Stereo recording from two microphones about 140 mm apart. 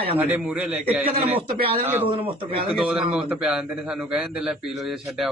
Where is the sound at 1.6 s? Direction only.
40° right (ahead or behind).